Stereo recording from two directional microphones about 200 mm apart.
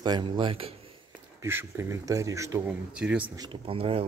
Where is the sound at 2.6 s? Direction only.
5° right (ahead or behind).